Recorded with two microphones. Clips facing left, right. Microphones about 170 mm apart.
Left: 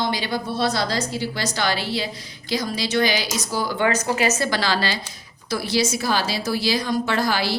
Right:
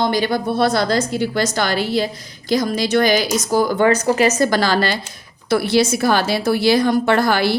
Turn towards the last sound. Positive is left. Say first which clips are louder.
# right 6 dB
turn(degrees=-55)  # may be behind; listen again after turning